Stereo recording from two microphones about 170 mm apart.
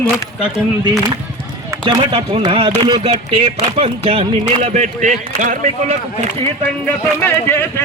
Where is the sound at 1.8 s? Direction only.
25° right (ahead or behind).